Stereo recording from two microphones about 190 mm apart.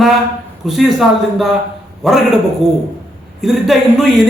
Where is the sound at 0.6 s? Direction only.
Centre (ahead or behind).